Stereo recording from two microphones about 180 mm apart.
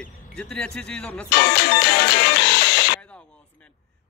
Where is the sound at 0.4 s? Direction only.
5° left (ahead or behind).